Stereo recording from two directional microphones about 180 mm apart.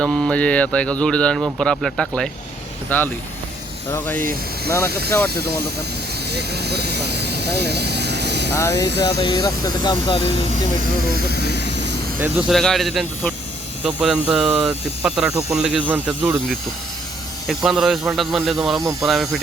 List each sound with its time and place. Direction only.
0.0 s speech: 5° left (ahead or behind)
6.3 s speech: 65° right (ahead or behind)
8.5 s speech: 15° left (ahead or behind)
9.0 s speech: 25° left (ahead or behind)
11.4 s vehicle: 70° right (ahead or behind)
12.2 s speech: 10° right (ahead or behind)
17.5 s speech: centre (ahead or behind)
18.8 s speech: 15° right (ahead or behind)
19.0 s speech: centre (ahead or behind)